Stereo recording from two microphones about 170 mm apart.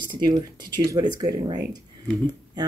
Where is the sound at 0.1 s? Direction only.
25° right (ahead or behind).